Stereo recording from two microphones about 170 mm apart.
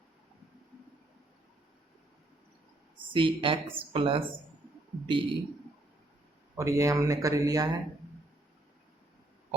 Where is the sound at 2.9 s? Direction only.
30° right (ahead or behind).